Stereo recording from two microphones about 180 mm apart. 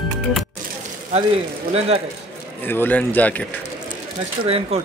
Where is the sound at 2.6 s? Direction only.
10° left (ahead or behind).